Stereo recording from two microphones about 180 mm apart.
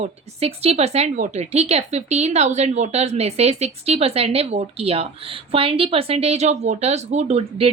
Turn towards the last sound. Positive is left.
turn(degrees=-40)  # may be behind; listen again after turning